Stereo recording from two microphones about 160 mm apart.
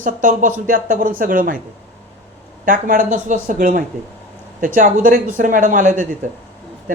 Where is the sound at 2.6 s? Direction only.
55° right (ahead or behind).